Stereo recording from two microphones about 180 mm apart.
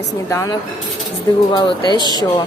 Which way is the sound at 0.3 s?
15° left (ahead or behind).